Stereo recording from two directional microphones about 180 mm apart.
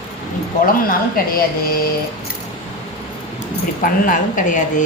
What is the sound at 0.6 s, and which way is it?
Speech, 50° left (ahead or behind).